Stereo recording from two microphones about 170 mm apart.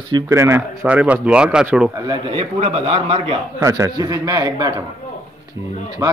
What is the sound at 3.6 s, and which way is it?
A man's voice, 20° right (ahead or behind).